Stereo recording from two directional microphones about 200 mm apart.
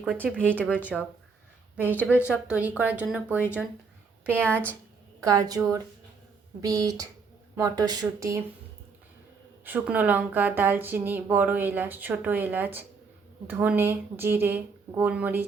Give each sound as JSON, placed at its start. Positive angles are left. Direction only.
{"t": 0.0, "sound": "speech", "side_deg": -5}
{"t": 2.2, "sound": "speech", "side_deg": -5}
{"t": 5.2, "sound": "speech", "side_deg": -15}
{"t": 9.6, "sound": "speech", "side_deg": -10}